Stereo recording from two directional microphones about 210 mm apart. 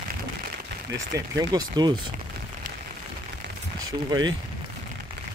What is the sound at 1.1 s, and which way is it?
Speech, 20° right (ahead or behind).